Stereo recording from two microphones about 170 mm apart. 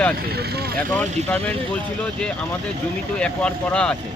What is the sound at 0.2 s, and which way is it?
Speech, 70° right (ahead or behind).